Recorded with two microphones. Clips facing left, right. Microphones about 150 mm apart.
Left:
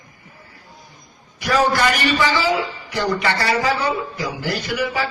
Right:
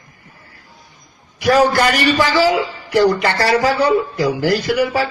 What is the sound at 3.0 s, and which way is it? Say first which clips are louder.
A man's voice: right 5 dB; 40° right (ahead or behind).